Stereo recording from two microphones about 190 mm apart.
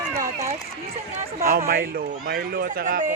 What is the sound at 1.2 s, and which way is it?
Speech, 50° right (ahead or behind).